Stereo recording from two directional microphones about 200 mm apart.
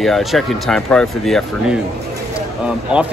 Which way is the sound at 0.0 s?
Centre (ahead or behind).